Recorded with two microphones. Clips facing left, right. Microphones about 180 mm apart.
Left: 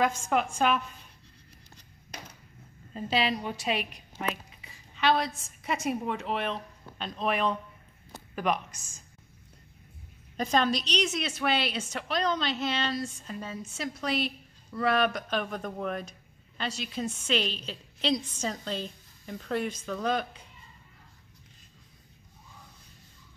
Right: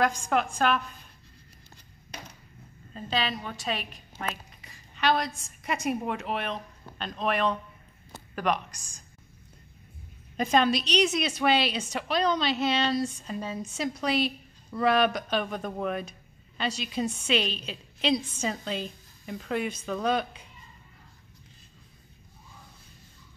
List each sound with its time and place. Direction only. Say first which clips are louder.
0.0 s a woman's voice: right 1 dB; 5° left (ahead or behind)
3.3 s a woman's voice: left 3 dB; 20° left (ahead or behind)
4.9 s a woman's voice: even; centre (ahead or behind)
10.4 s a woman's voice: right 3 dB; 10° right (ahead or behind)